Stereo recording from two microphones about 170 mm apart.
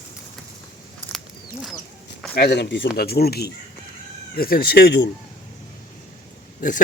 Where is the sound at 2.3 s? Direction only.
75° left (ahead or behind).